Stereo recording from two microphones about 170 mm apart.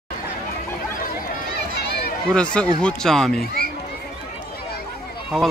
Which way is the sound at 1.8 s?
70° left (ahead or behind).